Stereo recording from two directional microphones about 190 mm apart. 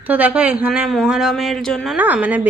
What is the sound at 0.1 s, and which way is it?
A woman's voice, 5° right (ahead or behind).